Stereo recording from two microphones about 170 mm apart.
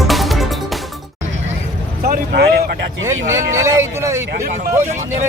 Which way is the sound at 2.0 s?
65° right (ahead or behind).